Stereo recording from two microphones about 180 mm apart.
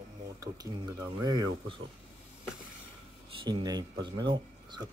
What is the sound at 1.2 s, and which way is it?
Speech, 25° right (ahead or behind).